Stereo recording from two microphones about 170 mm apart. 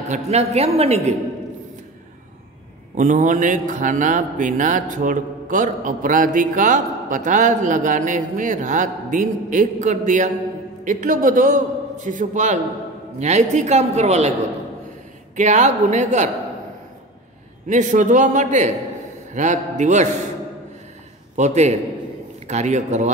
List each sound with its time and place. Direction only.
0.1 s a woman's voice: 40° right (ahead or behind)
3.0 s speech: 45° right (ahead or behind)
15.3 s speech: 45° right (ahead or behind)
17.6 s speech: 45° right (ahead or behind)
21.4 s speech: 40° right (ahead or behind)